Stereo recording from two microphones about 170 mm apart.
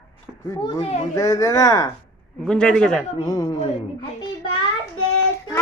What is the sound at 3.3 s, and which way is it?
Speech, 20° left (ahead or behind).